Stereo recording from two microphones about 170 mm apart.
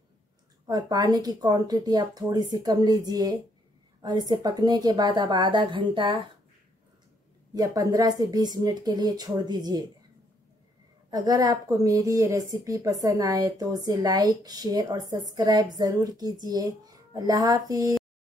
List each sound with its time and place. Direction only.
0.7 s a woman's voice: 25° right (ahead or behind)
7.5 s a woman's voice: 20° right (ahead or behind)
11.1 s a woman's voice: 20° right (ahead or behind)